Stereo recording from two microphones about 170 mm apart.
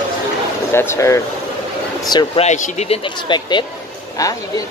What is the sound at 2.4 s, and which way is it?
A man's voice, 45° left (ahead or behind).